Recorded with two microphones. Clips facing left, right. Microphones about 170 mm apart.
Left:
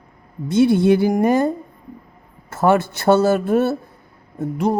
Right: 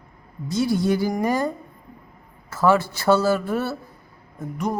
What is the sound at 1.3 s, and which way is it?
Speech, 25° left (ahead or behind).